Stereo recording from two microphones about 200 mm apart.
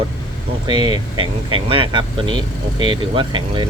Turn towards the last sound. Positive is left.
turn(degrees=-25)  # may be behind; listen again after turning